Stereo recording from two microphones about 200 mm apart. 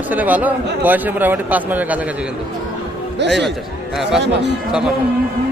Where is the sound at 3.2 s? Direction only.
60° right (ahead or behind).